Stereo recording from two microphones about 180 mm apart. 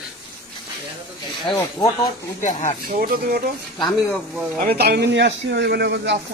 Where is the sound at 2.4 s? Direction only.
45° left (ahead or behind).